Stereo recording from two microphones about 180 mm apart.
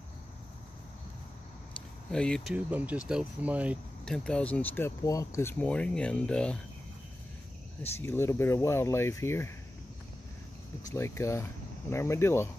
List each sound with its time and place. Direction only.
2.0 s speech: 5° left (ahead or behind)
2.5 s speech: 5° right (ahead or behind)
4.0 s speech: 5° left (ahead or behind)
8.0 s speech: 15° left (ahead or behind)
10.9 s speech: 15° left (ahead or behind)